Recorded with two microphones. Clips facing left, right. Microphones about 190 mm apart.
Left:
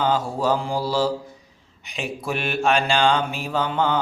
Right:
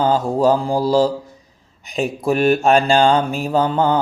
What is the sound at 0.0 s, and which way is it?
Mantra, 40° right (ahead or behind).